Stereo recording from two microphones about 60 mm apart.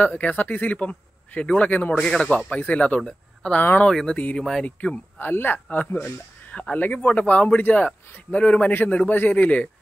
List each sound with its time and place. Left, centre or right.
0.0 s speech: left
2.0 s speech: centre
2.5 s speech: left
3.0 s speech: centre
5.2 s speech: left